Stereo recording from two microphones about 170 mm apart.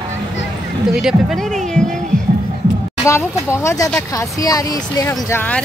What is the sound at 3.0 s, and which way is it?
Speech, 15° left (ahead or behind).